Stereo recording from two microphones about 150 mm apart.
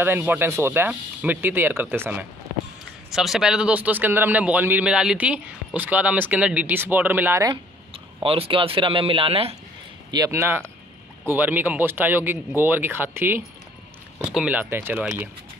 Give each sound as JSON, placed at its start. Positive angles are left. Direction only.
{"t": 0.0, "sound": "a man's voice", "side_deg": -15}
{"t": 7.9, "sound": "speech", "side_deg": -40}
{"t": 10.1, "sound": "a man's voice", "side_deg": -20}